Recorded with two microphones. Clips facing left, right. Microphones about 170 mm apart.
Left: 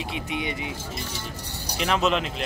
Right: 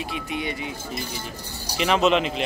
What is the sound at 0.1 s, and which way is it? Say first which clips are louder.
Speech: left 1 dB; 20° left (ahead or behind).